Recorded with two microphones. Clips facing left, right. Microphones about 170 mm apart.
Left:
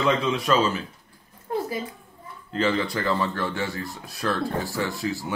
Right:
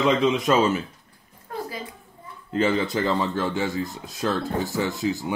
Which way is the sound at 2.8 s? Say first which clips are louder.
Right 2 dB; 20° right (ahead or behind).